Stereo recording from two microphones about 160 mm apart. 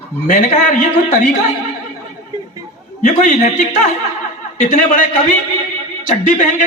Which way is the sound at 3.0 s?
50° left (ahead or behind).